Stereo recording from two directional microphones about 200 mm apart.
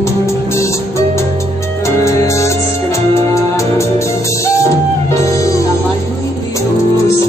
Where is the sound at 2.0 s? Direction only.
15° left (ahead or behind).